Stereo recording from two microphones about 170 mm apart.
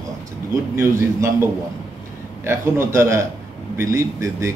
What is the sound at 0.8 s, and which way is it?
A man's voice, 15° right (ahead or behind).